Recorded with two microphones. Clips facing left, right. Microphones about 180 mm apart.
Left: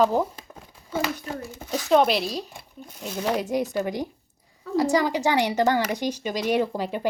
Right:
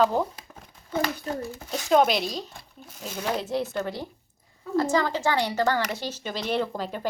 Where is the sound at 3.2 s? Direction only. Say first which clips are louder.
Left 3 dB; 15° left (ahead or behind).